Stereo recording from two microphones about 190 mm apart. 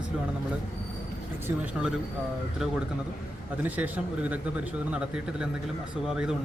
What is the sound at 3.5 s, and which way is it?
Speech, 10° right (ahead or behind).